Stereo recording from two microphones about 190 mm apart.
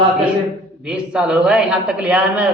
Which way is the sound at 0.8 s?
5° right (ahead or behind).